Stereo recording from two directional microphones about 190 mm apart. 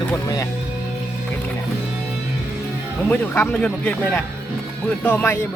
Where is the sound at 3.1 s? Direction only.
10° left (ahead or behind).